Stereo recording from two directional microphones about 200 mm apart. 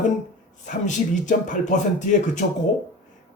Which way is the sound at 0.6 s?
40° left (ahead or behind).